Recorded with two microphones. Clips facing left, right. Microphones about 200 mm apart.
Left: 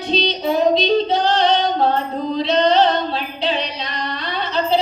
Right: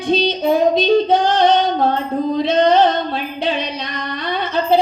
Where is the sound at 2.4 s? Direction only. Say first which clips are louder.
Right 2 dB; 50° right (ahead or behind).